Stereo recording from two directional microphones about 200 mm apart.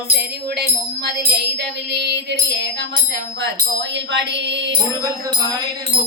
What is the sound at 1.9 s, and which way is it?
Music, 55° right (ahead or behind).